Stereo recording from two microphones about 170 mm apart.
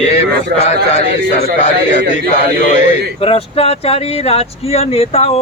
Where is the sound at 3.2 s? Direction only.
35° left (ahead or behind).